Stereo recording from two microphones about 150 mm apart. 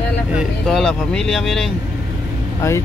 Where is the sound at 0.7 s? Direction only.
5° left (ahead or behind).